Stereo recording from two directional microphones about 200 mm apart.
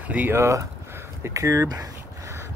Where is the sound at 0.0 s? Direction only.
10° right (ahead or behind).